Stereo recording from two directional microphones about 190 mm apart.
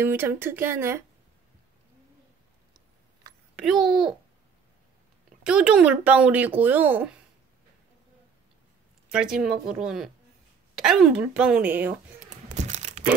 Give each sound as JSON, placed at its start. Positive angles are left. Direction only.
{"t": 0.0, "sound": "speech", "side_deg": -10}
{"t": 3.5, "sound": "speech", "side_deg": 0}
{"t": 5.4, "sound": "speech", "side_deg": -5}
{"t": 9.1, "sound": "speech", "side_deg": -5}
{"t": 12.4, "sound": "tearing", "side_deg": -40}